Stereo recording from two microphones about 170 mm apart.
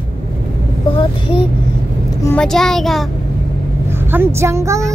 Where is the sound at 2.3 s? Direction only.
5° left (ahead or behind).